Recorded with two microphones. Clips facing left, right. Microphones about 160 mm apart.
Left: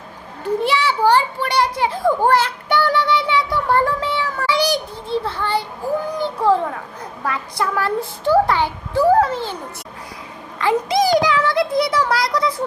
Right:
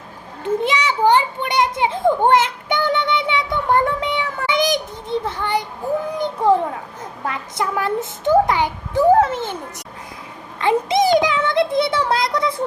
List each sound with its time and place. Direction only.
0.4 s a child's voice: 20° right (ahead or behind)
10.6 s child singing: 25° right (ahead or behind)